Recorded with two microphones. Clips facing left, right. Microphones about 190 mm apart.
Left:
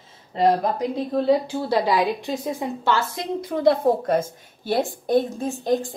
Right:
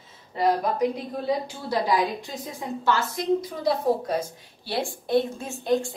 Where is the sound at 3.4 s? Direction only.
55° left (ahead or behind).